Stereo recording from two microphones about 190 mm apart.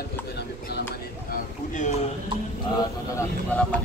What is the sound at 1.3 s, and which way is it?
Speech, 40° left (ahead or behind).